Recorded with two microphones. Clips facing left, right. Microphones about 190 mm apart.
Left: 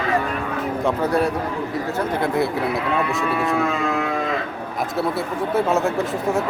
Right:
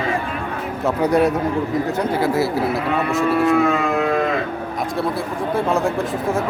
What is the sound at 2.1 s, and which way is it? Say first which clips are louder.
Speech: right 1 dB; 5° right (ahead or behind).